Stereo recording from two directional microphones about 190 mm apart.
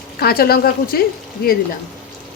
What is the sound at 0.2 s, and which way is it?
Speech, 55° left (ahead or behind).